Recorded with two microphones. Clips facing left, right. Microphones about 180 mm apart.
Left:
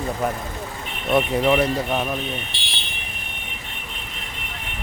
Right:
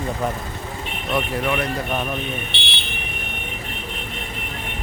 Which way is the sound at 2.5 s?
65° right (ahead or behind).